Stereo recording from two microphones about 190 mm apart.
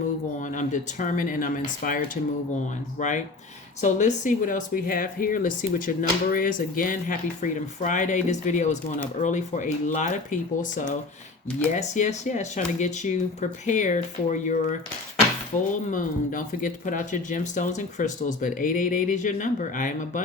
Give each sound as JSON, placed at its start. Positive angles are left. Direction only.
{"t": 0.4, "sound": "speech", "side_deg": 40}
{"t": 15.9, "sound": "speech", "side_deg": 45}